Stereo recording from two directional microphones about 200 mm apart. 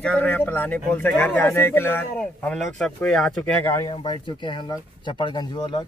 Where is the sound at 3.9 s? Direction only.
25° left (ahead or behind).